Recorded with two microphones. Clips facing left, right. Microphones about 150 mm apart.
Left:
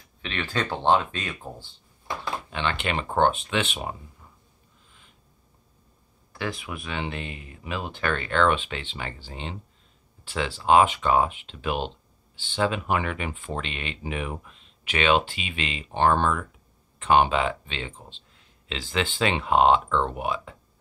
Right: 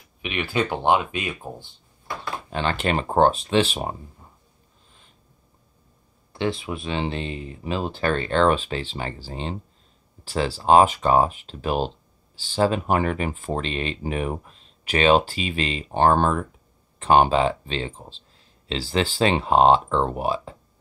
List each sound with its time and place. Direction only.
0.2 s speech: 15° right (ahead or behind)
2.5 s speech: 40° right (ahead or behind)
6.3 s speech: 25° right (ahead or behind)